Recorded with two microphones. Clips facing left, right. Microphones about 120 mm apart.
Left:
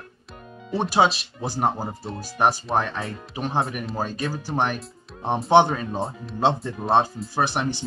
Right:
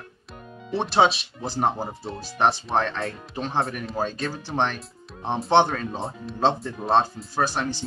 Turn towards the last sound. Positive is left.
turn(degrees=15)  # may be behind; listen again after turning